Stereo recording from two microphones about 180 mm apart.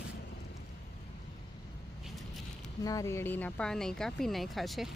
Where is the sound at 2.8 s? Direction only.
20° left (ahead or behind).